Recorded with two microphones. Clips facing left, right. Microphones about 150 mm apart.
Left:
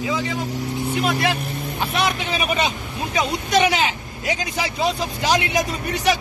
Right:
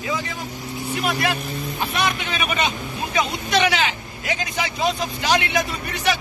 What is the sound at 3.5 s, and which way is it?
A man's voice, 40° left (ahead or behind).